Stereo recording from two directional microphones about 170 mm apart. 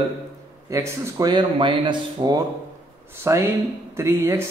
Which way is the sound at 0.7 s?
20° right (ahead or behind).